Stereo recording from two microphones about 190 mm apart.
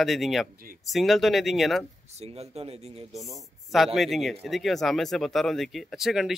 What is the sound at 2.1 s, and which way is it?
Speech, 35° right (ahead or behind).